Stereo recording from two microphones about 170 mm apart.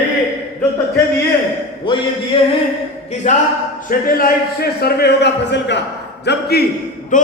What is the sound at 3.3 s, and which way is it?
Speech, 40° left (ahead or behind).